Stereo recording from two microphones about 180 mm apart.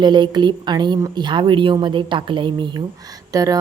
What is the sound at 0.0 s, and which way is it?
A woman's voice, 25° right (ahead or behind).